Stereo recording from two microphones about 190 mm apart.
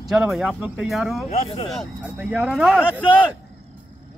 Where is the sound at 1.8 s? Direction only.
5° right (ahead or behind).